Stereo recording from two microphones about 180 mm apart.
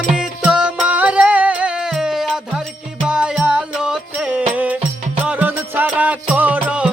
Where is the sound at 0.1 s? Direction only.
5° right (ahead or behind).